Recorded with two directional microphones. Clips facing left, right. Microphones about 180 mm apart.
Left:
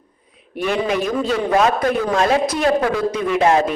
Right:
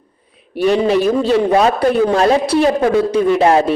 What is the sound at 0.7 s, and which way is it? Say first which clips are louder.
A man's voice: right 6 dB; 30° right (ahead or behind).